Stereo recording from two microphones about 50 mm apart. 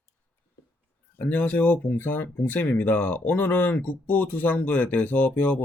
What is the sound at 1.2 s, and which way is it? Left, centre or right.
Speech, left.